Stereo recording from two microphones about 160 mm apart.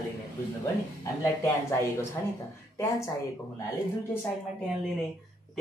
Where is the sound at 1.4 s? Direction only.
15° left (ahead or behind).